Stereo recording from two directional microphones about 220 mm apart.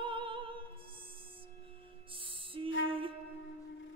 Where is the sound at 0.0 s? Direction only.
25° right (ahead or behind).